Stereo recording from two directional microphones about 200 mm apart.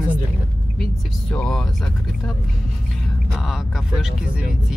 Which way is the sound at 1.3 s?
5° left (ahead or behind).